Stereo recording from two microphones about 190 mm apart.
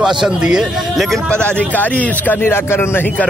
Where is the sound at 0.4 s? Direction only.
5° right (ahead or behind).